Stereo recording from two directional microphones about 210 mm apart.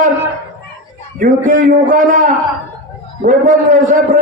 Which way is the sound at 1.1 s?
40° right (ahead or behind).